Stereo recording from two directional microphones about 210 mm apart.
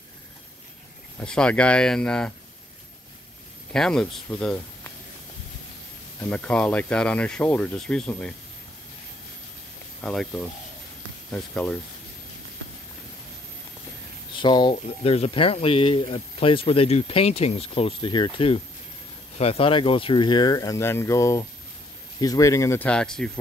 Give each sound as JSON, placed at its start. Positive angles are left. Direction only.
{"t": 1.2, "sound": "speech", "side_deg": 5}
{"t": 3.7, "sound": "speech", "side_deg": 5}
{"t": 6.2, "sound": "speech", "side_deg": 5}
{"t": 10.0, "sound": "speech", "side_deg": 5}
{"t": 14.3, "sound": "speech", "side_deg": 20}